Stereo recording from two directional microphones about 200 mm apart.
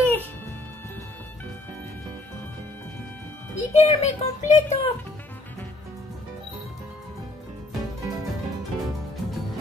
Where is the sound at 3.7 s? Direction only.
35° left (ahead or behind).